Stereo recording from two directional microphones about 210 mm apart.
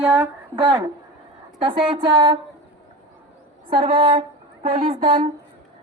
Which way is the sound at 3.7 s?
25° right (ahead or behind).